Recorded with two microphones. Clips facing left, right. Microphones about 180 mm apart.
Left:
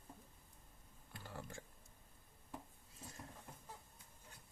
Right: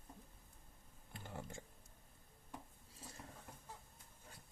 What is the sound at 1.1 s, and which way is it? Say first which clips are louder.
Typing: right 1 dB; 20° right (ahead or behind).